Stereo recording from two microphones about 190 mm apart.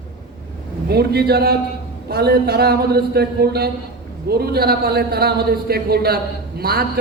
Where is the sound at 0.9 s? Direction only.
55° right (ahead or behind).